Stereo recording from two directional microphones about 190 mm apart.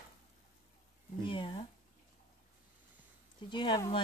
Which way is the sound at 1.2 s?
25° left (ahead or behind).